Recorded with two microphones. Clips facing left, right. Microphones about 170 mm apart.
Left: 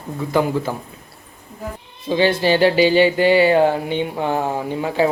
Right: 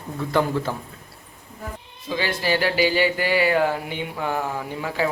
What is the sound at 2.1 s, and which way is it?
Speech, 25° left (ahead or behind).